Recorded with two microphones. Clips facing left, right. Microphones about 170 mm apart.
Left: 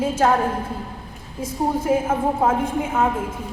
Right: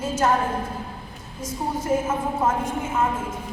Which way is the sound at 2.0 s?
60° left (ahead or behind).